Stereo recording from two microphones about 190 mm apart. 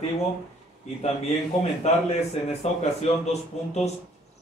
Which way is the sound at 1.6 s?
35° left (ahead or behind).